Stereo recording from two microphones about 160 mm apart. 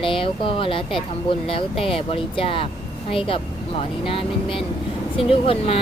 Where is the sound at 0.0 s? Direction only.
35° left (ahead or behind).